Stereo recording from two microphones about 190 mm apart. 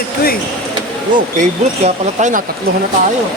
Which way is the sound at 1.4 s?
40° right (ahead or behind).